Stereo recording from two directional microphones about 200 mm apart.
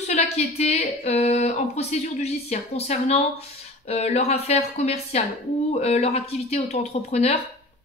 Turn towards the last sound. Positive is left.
turn(degrees=30)  # may be behind; listen again after turning